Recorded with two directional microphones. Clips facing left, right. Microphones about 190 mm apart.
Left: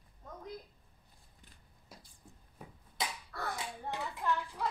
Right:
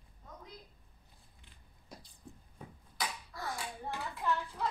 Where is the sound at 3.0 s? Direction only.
25° left (ahead or behind).